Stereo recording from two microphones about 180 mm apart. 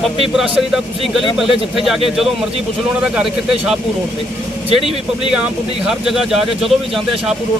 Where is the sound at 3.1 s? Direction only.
5° right (ahead or behind).